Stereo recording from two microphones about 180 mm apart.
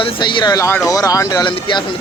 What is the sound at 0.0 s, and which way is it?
Speech, 25° left (ahead or behind).